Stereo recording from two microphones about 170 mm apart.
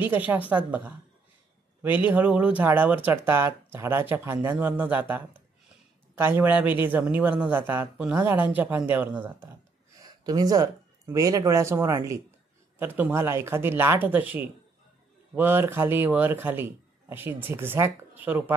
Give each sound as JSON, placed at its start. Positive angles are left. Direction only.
{"t": 0.0, "sound": "speech", "side_deg": -10}
{"t": 10.2, "sound": "speech", "side_deg": -20}